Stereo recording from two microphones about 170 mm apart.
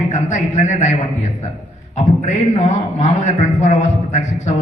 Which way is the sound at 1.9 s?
40° left (ahead or behind).